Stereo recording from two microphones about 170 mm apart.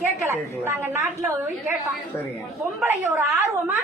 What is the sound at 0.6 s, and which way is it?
Speech, 15° right (ahead or behind).